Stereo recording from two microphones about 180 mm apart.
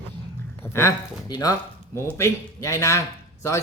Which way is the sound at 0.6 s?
15° left (ahead or behind).